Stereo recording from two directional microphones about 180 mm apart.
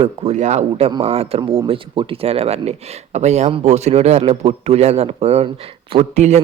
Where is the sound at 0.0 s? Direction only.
35° right (ahead or behind).